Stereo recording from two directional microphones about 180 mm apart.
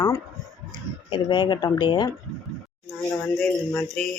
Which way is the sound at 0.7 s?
25° left (ahead or behind).